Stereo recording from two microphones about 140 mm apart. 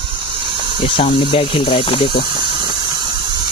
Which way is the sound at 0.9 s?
40° left (ahead or behind).